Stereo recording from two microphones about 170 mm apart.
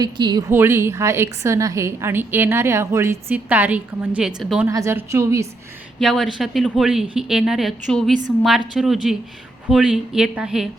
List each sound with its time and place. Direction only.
0.0 s a woman's voice: 25° right (ahead or behind)
0.5 s a woman's voice: 15° right (ahead or behind)
4.7 s a woman's voice: 15° right (ahead or behind)
6.0 s speech: centre (ahead or behind)